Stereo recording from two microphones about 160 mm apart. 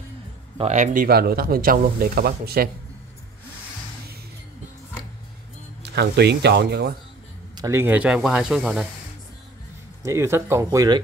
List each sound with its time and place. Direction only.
0.6 s speech: 45° right (ahead or behind)
1.0 s speech: 70° right (ahead or behind)
5.8 s speech: 90° right
7.5 s speech: 20° right (ahead or behind); by 8.8 s 5° right (ahead or behind)
10.0 s speech: 15° right (ahead or behind)